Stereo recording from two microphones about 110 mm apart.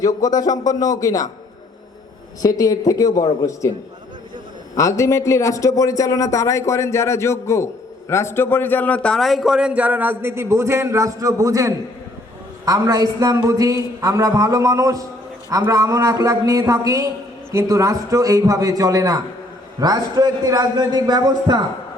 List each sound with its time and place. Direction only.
0.0 s speech: 35° left (ahead or behind)
2.4 s speech: 35° left (ahead or behind)
4.8 s a man's voice: 30° left (ahead or behind); by 21.7 s 40° right (ahead or behind)